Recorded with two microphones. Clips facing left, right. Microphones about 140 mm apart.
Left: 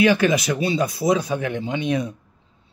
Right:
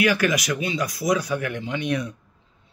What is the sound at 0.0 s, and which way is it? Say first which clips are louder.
Speech: left 4 dB; 25° left (ahead or behind).